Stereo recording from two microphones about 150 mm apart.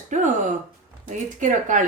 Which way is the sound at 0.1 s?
55° right (ahead or behind).